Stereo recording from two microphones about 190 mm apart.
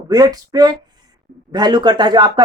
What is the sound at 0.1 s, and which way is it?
Speech, 20° right (ahead or behind).